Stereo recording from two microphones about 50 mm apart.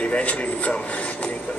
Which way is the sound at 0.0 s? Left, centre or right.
Left.